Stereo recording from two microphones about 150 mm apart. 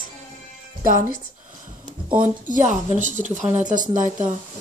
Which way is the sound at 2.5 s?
55° right (ahead or behind).